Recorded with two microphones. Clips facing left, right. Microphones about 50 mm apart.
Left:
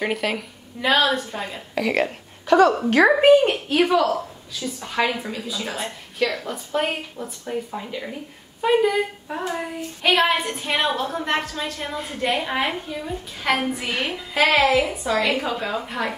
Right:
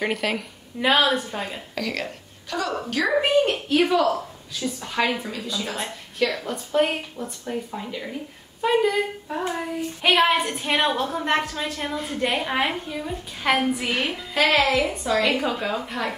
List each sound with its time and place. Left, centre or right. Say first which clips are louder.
0.0 s a woman's voice: left 1 dB; centre
0.7 s a woman's voice: even; centre
1.8 s speech: left 7 dB; left
2.4 s a woman's voice: left 13 dB; left
3.4 s a woman's voice: left 1 dB; centre